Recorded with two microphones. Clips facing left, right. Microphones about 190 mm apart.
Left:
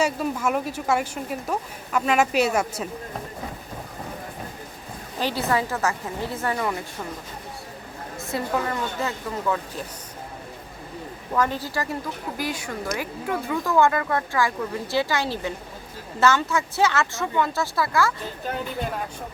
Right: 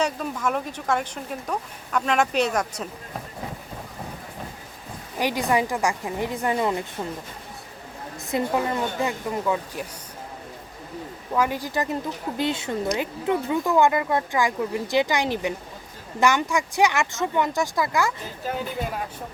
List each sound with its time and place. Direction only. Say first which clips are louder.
0.0 s speech: left 2 dB; 5° left (ahead or behind)
5.1 s a woman's voice: right 1 dB; 15° right (ahead or behind)
8.3 s a woman's voice: right 2 dB; 20° right (ahead or behind)
11.3 s a woman's voice: right 1 dB; 10° right (ahead or behind)
18.4 s speech: right 1 dB; 5° right (ahead or behind)